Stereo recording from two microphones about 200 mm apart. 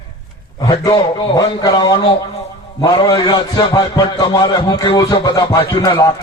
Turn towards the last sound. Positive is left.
turn(degrees=15)  # may be behind; listen again after turning